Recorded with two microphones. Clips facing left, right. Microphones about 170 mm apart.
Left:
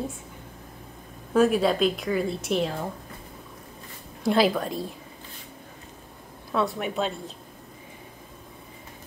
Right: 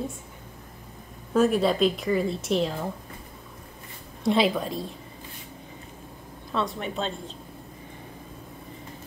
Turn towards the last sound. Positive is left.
turn(degrees=10)  # may be behind; listen again after turning